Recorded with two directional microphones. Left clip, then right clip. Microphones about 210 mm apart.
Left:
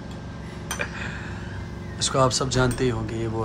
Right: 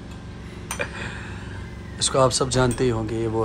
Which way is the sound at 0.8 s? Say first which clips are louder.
Right 2 dB; 5° left (ahead or behind).